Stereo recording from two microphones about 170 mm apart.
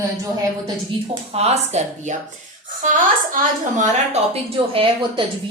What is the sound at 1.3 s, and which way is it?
Speech, 40° right (ahead or behind).